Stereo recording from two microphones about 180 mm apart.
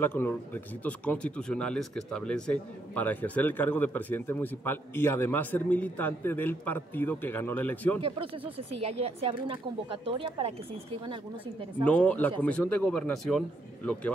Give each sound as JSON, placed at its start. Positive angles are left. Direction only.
{"t": 0.0, "sound": "speech", "side_deg": 10}
{"t": 8.0, "sound": "speech", "side_deg": -30}
{"t": 11.8, "sound": "speech", "side_deg": 5}